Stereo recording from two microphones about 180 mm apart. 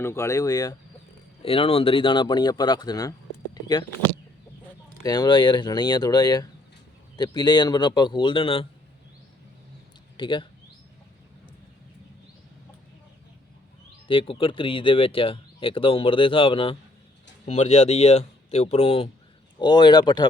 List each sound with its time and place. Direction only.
0.0 s speech: 15° left (ahead or behind)
1.4 s speech: 30° left (ahead or behind)
5.0 s speech: 25° left (ahead or behind)
10.2 s speech: 25° left (ahead or behind)
14.1 s speech: 30° left (ahead or behind)